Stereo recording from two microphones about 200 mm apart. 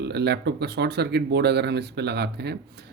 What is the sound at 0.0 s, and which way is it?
Speech, 55° right (ahead or behind).